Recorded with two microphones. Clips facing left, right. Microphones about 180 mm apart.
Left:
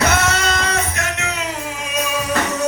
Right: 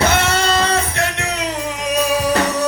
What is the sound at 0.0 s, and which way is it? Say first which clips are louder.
Music: right 2 dB; 30° right (ahead or behind).